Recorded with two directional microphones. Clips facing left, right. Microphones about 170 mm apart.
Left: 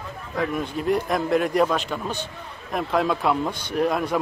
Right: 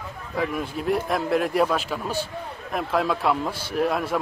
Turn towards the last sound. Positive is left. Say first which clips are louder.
# left 1 dB
turn(degrees=0)  # may be behind; listen again after turning